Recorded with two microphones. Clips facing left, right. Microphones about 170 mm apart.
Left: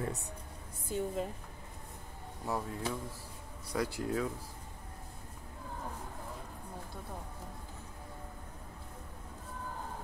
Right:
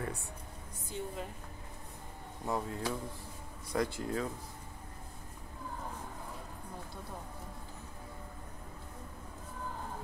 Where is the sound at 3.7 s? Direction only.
5° left (ahead or behind).